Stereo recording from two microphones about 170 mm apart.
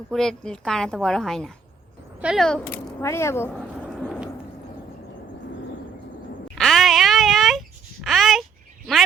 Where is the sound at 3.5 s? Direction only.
5° left (ahead or behind).